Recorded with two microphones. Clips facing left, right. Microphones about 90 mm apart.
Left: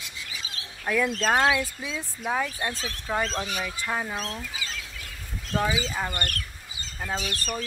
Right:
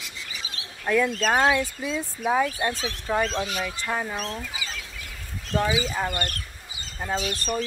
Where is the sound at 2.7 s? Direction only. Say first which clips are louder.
Right 4 dB; 35° right (ahead or behind).